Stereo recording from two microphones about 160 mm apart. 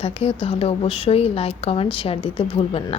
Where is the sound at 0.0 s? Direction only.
35° left (ahead or behind).